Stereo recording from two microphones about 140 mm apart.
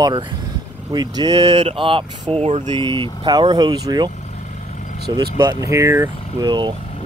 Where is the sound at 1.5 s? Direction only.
45° right (ahead or behind).